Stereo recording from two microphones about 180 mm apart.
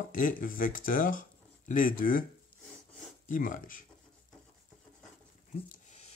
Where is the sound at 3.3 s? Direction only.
50° left (ahead or behind).